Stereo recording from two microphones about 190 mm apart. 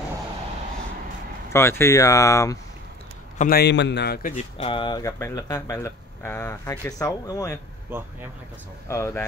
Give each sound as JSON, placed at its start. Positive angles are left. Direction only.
{"t": 1.5, "sound": "speech", "side_deg": 15}
{"t": 3.3, "sound": "a man's voice", "side_deg": 50}
{"t": 4.6, "sound": "speech", "side_deg": 25}
{"t": 7.9, "sound": "speech", "side_deg": -10}
{"t": 8.8, "sound": "speech", "side_deg": 15}